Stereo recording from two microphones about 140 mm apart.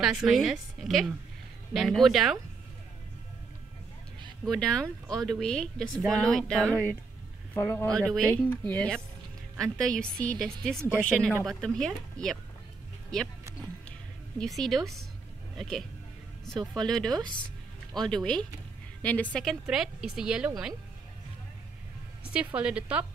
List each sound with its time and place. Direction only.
0.0 s speech: 5° right (ahead or behind)
4.5 s speech: 5° left (ahead or behind)
4.8 s speech: 25° right (ahead or behind)
5.2 s speech: 5° left (ahead or behind)
14.4 s a man's voice: centre (ahead or behind)
22.2 s a woman's voice: 10° right (ahead or behind)